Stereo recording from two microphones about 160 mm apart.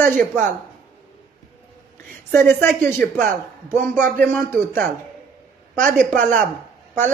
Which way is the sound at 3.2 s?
55° right (ahead or behind).